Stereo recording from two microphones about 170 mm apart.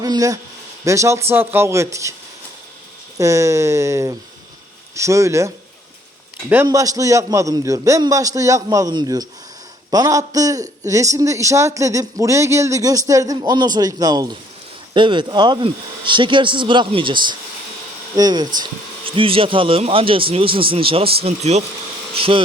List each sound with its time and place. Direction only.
0.0 s a man's voice: 20° right (ahead or behind)
3.2 s speech: 20° right (ahead or behind)
6.5 s a man's voice: 15° right (ahead or behind); by 22.4 s 30° right (ahead or behind)